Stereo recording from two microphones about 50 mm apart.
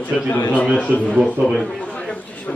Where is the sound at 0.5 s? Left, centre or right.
Left.